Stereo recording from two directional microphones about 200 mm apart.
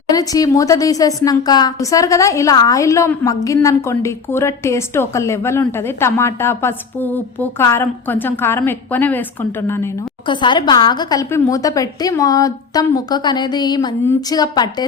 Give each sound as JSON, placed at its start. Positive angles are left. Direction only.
{"t": 0.1, "sound": "a woman's voice", "side_deg": 20}
{"t": 10.2, "sound": "a woman's voice", "side_deg": 25}